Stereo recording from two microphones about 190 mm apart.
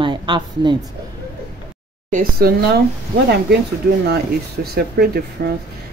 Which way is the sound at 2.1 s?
50° right (ahead or behind).